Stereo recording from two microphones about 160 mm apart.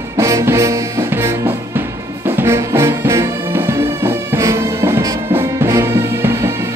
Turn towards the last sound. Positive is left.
turn(degrees=-15)  # may be behind; listen again after turning